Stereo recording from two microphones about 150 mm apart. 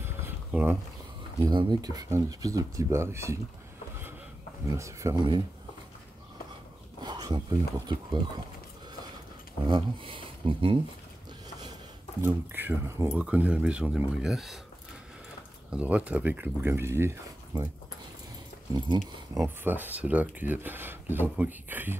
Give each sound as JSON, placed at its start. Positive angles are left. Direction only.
{"t": 0.0, "sound": "a sound", "side_deg": -15}
{"t": 1.4, "sound": "speech", "side_deg": -30}
{"t": 4.6, "sound": "speech", "side_deg": -20}
{"t": 7.0, "sound": "speech", "side_deg": -25}
{"t": 9.7, "sound": "speech", "side_deg": -30}
{"t": 12.2, "sound": "speech", "side_deg": -15}
{"t": 15.7, "sound": "speech", "side_deg": -10}
{"t": 18.7, "sound": "speech", "side_deg": -30}
{"t": 19.3, "sound": "speech", "side_deg": -15}